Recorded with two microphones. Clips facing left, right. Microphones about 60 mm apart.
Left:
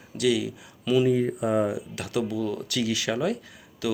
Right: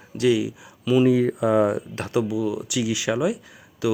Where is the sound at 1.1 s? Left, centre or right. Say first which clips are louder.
Right 4 dB; right.